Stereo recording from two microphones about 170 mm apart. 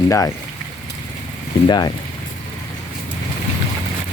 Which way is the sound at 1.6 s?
25° left (ahead or behind).